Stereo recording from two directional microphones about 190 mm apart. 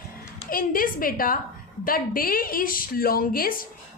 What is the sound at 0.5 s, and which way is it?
A woman's voice, 50° left (ahead or behind).